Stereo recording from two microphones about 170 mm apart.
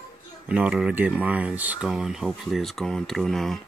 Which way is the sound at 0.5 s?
5° right (ahead or behind).